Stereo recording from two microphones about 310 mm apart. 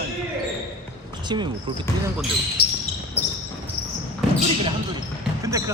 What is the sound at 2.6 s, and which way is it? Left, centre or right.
Basketball bounce, left.